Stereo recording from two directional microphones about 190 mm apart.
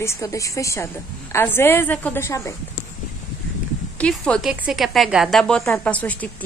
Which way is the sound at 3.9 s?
5° left (ahead or behind).